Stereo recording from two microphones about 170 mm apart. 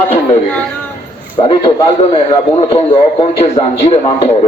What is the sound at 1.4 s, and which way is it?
A man's voice, 30° left (ahead or behind).